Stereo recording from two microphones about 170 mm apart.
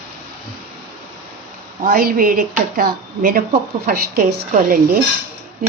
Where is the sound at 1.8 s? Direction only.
60° right (ahead or behind).